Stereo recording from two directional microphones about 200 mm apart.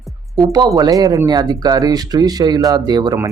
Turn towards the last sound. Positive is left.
turn(degrees=-20)  # may be behind; listen again after turning